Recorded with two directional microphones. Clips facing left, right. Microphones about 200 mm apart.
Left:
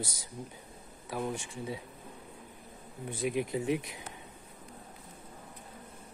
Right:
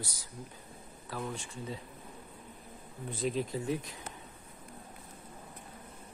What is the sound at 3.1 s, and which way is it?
Speech, 15° left (ahead or behind).